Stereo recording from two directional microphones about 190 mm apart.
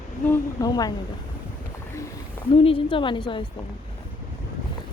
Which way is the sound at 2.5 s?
30° left (ahead or behind).